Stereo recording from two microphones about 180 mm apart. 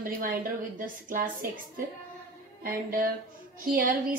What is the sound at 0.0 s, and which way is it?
A woman's voice, 50° right (ahead or behind).